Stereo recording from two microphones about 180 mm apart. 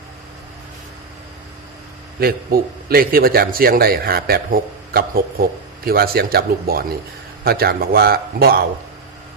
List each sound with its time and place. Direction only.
2.2 s a man's voice: 55° right (ahead or behind)